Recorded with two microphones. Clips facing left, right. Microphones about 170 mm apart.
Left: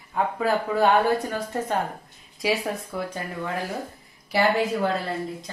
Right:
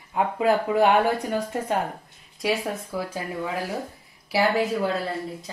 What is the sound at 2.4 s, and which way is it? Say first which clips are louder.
Speech: even; 5° right (ahead or behind).